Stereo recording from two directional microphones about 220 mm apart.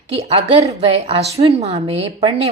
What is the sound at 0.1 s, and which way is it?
A woman's voice, 25° right (ahead or behind).